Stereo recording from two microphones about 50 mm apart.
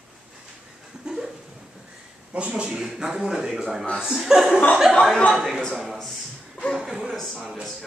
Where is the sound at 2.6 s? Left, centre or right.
Centre.